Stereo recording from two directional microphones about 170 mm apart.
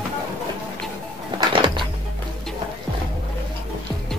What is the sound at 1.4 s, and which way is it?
Music, 30° right (ahead or behind).